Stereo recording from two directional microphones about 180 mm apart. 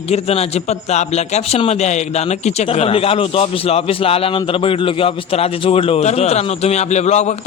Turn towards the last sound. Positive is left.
turn(degrees=40)  # may be behind; listen again after turning